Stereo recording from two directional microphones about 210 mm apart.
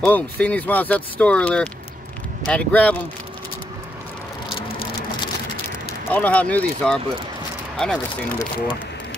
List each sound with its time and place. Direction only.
0.0 s speech: 5° left (ahead or behind)
4.6 s a sound: 25° left (ahead or behind)
6.0 s speech: 5° left (ahead or behind)